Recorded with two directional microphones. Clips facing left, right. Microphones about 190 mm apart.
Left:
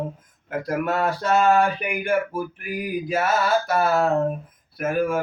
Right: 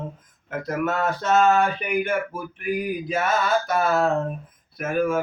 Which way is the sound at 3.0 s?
5° left (ahead or behind).